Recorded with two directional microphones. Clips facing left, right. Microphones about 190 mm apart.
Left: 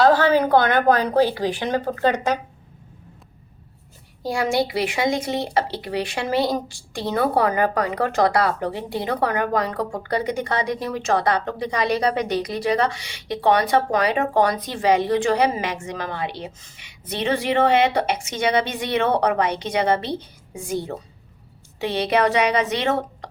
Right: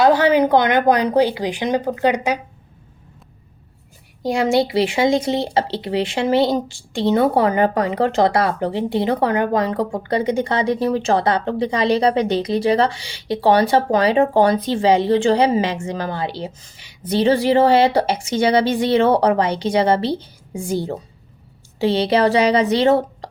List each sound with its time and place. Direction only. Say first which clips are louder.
0.0 s speech: right 2 dB; 15° right (ahead or behind)
4.2 s a woman's voice: right 4 dB; 20° right (ahead or behind)